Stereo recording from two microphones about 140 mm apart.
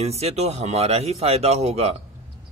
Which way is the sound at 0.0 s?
50° right (ahead or behind).